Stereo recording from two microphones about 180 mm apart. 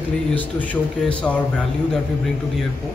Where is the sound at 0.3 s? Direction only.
10° left (ahead or behind).